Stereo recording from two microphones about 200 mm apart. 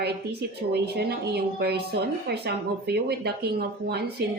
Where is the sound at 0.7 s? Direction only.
55° right (ahead or behind).